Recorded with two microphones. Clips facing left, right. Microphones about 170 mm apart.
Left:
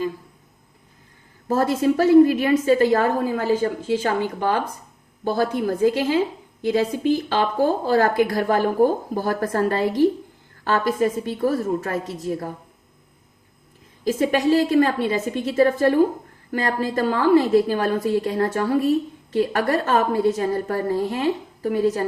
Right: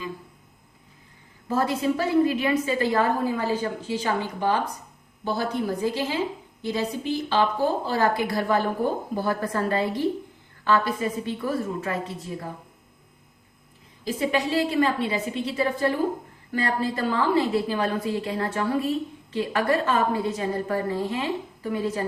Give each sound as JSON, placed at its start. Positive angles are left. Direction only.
{"t": 1.5, "sound": "a woman's voice", "side_deg": 40}
{"t": 14.0, "sound": "a woman's voice", "side_deg": 45}